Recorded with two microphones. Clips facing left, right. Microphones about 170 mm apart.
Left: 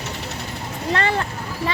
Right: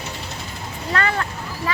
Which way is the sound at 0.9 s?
30° left (ahead or behind).